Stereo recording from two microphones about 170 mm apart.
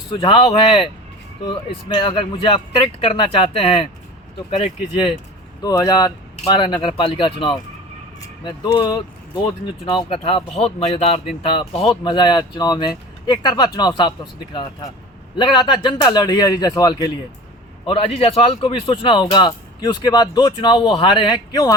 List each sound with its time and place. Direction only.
0.2 s speech: 30° left (ahead or behind)
5.6 s a man's voice: 20° left (ahead or behind)
15.4 s a man's voice: 25° left (ahead or behind)
17.8 s a man's voice: 35° left (ahead or behind)